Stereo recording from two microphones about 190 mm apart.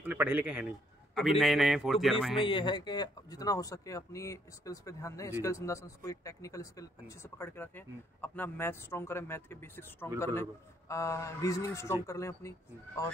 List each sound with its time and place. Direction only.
0.0 s a man's voice: 10° right (ahead or behind)
2.3 s speech: 25° left (ahead or behind)